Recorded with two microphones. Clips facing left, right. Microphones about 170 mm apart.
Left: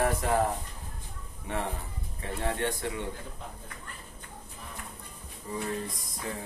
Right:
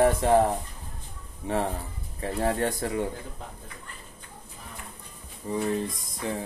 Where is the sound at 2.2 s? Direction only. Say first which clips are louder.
Right 5 dB; 35° right (ahead or behind).